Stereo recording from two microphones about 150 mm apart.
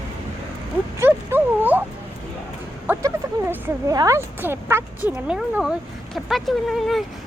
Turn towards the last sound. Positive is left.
turn(degrees=0)  # may be behind; listen again after turning